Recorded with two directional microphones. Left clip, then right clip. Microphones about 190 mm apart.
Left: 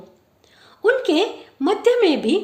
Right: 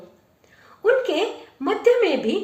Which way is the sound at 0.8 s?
50° left (ahead or behind).